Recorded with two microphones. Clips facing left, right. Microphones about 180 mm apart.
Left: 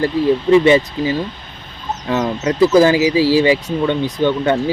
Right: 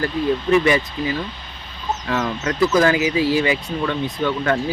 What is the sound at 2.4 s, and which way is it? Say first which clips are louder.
Speech: left 6 dB; 25° left (ahead or behind).